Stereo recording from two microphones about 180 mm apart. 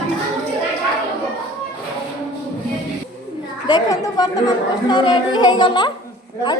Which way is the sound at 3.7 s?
20° left (ahead or behind).